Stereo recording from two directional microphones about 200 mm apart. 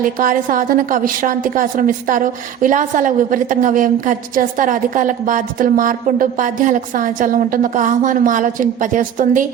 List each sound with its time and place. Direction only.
0.0 s a woman's voice: 40° right (ahead or behind)